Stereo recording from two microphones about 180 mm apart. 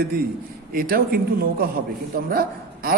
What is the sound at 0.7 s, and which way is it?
A man's voice, 55° right (ahead or behind).